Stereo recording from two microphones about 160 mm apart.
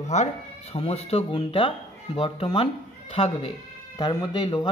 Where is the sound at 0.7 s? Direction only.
40° left (ahead or behind).